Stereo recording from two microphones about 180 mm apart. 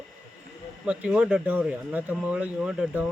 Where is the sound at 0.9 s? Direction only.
5° right (ahead or behind).